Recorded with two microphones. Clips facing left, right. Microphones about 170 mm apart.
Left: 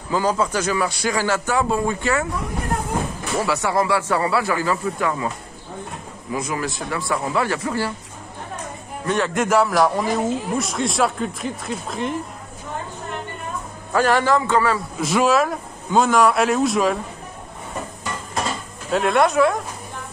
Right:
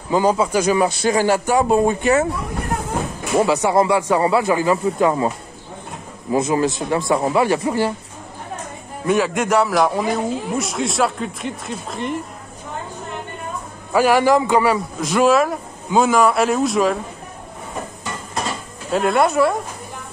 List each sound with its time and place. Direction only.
0.1 s speech: 15° right (ahead or behind)
3.3 s speech: 20° right (ahead or behind)
6.3 s speech: 25° right (ahead or behind)
9.0 s speech: 5° right (ahead or behind)
13.9 s speech: 10° right (ahead or behind)
15.0 s speech: centre (ahead or behind)
18.9 s speech: centre (ahead or behind)